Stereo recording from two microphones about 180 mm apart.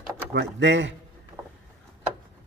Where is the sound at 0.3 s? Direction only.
75° right (ahead or behind).